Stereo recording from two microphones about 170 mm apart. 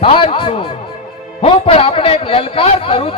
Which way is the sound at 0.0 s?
30° left (ahead or behind).